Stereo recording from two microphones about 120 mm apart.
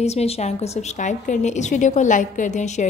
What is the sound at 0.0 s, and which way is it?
A woman's voice, 60° left (ahead or behind).